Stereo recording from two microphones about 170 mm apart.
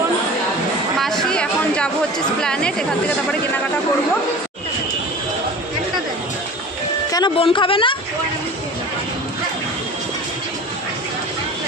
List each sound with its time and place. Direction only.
0.9 s chatter: centre (ahead or behind)
2.4 s speech: 5° left (ahead or behind)
7.1 s speech: 25° left (ahead or behind)